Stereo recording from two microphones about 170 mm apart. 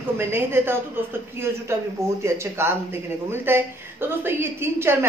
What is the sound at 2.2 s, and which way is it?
A woman's voice, 15° right (ahead or behind).